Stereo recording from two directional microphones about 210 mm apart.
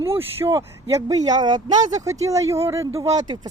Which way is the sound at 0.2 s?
10° right (ahead or behind).